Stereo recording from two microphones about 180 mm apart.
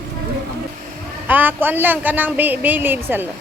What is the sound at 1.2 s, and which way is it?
A woman's voice, 10° right (ahead or behind).